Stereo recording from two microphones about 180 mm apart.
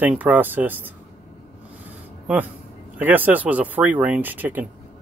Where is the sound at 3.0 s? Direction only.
10° right (ahead or behind).